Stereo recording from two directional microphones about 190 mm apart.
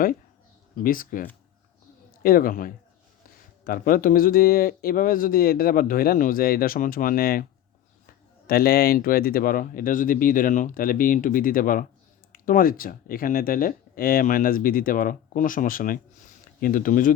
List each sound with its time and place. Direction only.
0.8 s speech: 45° left (ahead or behind)
8.4 s speech: 55° left (ahead or behind)